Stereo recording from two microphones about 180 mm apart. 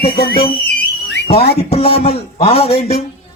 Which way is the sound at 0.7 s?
60° left (ahead or behind).